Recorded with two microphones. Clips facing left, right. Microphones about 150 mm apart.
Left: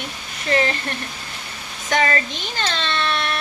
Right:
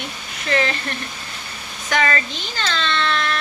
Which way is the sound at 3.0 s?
15° left (ahead or behind).